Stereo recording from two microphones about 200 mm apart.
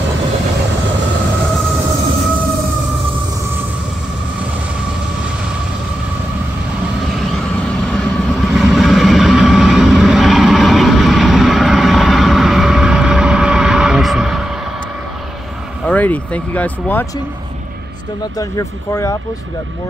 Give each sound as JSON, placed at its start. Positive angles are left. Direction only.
{"t": 7.3, "sound": "vehicle", "side_deg": 0}
{"t": 15.8, "sound": "speech", "side_deg": 5}
{"t": 18.4, "sound": "speech", "side_deg": 15}